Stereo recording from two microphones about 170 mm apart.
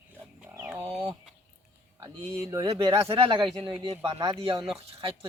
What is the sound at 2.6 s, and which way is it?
A man's voice, 35° right (ahead or behind).